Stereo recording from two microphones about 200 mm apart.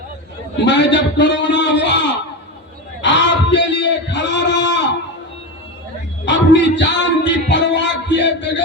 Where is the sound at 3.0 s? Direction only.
65° left (ahead or behind).